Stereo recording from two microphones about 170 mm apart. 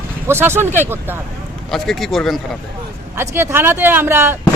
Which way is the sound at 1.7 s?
Centre (ahead or behind).